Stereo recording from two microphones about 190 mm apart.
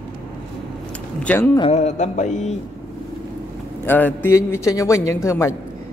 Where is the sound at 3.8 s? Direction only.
10° left (ahead or behind).